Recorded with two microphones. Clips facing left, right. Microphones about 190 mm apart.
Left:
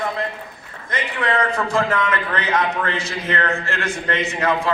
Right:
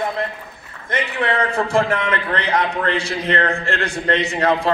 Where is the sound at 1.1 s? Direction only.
25° right (ahead or behind).